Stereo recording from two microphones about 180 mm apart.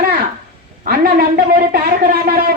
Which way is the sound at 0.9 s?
55° right (ahead or behind).